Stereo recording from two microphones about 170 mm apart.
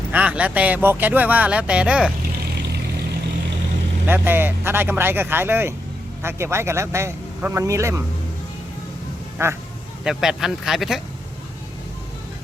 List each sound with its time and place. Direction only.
0.1 s speech: 10° right (ahead or behind)
4.0 s speech: 10° right (ahead or behind)
9.4 s speech: 15° right (ahead or behind)
10.0 s speech: 5° right (ahead or behind)